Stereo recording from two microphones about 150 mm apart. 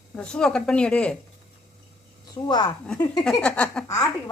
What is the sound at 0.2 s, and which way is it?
Speech, 5° left (ahead or behind).